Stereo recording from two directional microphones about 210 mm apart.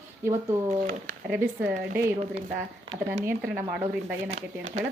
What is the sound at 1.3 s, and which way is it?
Speech, 10° right (ahead or behind).